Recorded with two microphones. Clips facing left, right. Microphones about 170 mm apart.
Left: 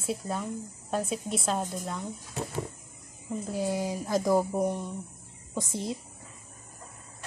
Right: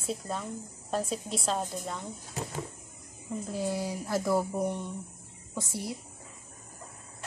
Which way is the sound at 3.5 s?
15° left (ahead or behind).